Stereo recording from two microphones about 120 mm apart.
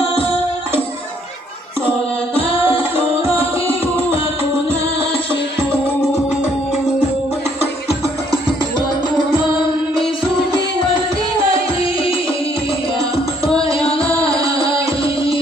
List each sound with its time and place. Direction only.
2.3 s music: 55° left (ahead or behind)